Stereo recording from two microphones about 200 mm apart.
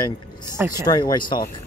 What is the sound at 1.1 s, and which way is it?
Speech, 20° left (ahead or behind).